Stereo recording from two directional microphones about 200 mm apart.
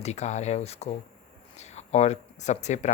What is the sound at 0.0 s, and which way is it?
Speech, 35° left (ahead or behind).